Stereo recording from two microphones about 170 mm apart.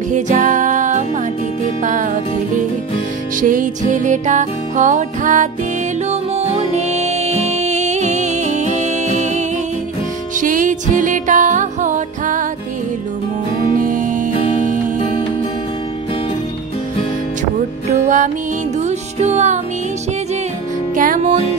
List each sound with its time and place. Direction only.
0.1 s music: 50° right (ahead or behind)
3.3 s music: 50° right (ahead or behind)
13.7 s music: 50° right (ahead or behind)
17.8 s music: 45° right (ahead or behind)
20.9 s music: 55° right (ahead or behind)